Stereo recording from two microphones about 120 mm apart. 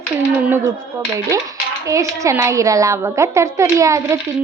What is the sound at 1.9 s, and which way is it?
Speech, 25° right (ahead or behind).